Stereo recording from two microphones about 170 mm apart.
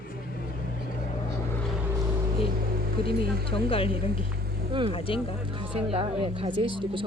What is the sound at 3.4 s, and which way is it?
Speech, 35° left (ahead or behind).